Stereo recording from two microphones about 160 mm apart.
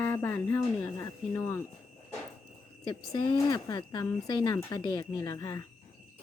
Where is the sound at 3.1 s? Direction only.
25° left (ahead or behind).